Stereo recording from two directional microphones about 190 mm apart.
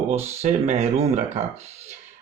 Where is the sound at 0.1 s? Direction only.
35° right (ahead or behind).